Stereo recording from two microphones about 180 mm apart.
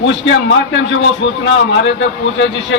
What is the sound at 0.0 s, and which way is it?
A man's voice, 90° left.